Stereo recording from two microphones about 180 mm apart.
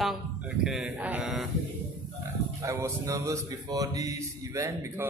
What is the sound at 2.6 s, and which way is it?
Speech, 15° right (ahead or behind).